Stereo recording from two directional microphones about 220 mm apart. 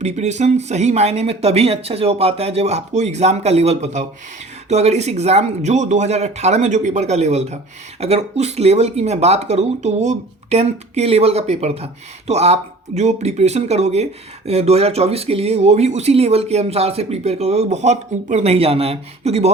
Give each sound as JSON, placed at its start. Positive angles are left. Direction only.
{"t": 0.0, "sound": "speech", "side_deg": -30}